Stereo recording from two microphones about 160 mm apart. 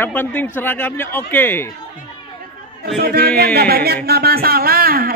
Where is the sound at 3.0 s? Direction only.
75° right (ahead or behind).